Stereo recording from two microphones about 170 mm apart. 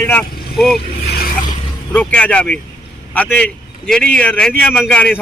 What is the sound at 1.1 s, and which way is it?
Zipper, 60° left (ahead or behind).